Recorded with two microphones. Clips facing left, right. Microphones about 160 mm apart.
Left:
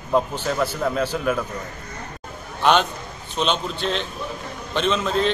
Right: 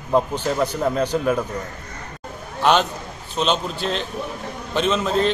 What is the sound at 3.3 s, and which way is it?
A man's voice, centre (ahead or behind).